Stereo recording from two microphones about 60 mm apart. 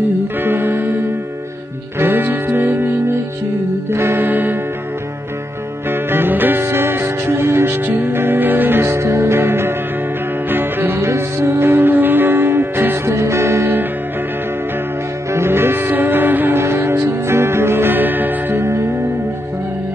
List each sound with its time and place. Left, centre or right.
0.4 s music: right
2.0 s music: right
3.9 s music: right
5.9 s music: right
7.8 s music: right
11.1 s music: right
13.1 s music: right
15.3 s music: right
18.6 s music: right